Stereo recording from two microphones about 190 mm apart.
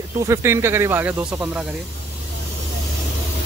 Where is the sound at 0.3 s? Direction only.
15° right (ahead or behind).